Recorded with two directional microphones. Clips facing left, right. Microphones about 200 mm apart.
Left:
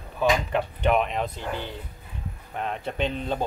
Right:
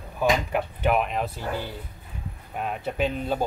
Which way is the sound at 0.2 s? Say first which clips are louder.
Even; 5° right (ahead or behind).